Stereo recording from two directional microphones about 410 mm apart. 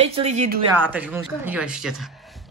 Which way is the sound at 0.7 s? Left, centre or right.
Centre.